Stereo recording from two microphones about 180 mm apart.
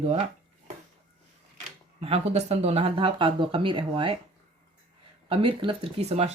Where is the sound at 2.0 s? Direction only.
35° right (ahead or behind).